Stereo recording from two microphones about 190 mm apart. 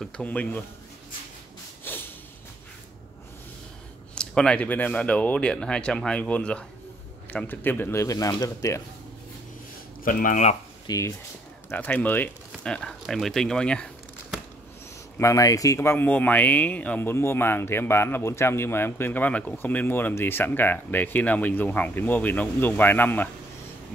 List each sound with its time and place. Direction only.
0.0 s speech: 5° left (ahead or behind)
1.9 s a sound: 10° left (ahead or behind)
4.1 s speech: 5° left (ahead or behind)
10.0 s speech: 45° left (ahead or behind)
10.9 s speech: 15° left (ahead or behind)
15.1 s speech: 15° left (ahead or behind)